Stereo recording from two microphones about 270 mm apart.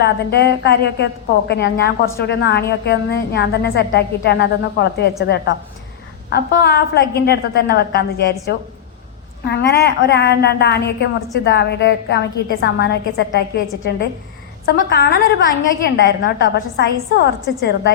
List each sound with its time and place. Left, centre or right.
0.0 s a woman's voice: left
9.5 s a woman's voice: left
14.7 s a woman's voice: left